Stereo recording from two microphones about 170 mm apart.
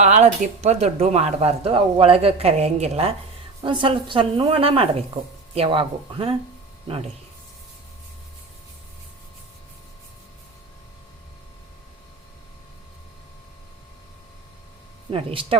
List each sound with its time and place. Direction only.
0.0 s speech: 45° right (ahead or behind)
15.1 s speech: 30° right (ahead or behind)